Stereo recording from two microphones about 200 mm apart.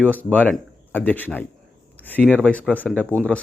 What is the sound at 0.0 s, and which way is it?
Speech, 10° left (ahead or behind).